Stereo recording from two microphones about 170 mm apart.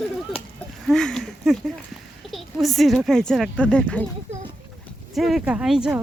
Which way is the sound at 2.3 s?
Centre (ahead or behind).